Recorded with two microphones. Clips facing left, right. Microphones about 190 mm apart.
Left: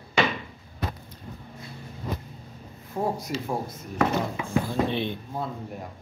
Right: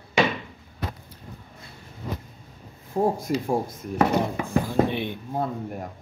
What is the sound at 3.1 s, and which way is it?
Speech, 50° right (ahead or behind).